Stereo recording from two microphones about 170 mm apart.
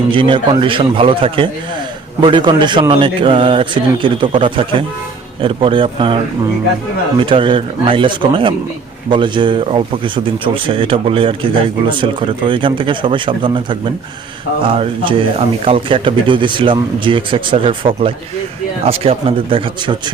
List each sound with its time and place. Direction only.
0.1 s a man's voice: 30° right (ahead or behind)
7.2 s a man's voice: 30° right (ahead or behind)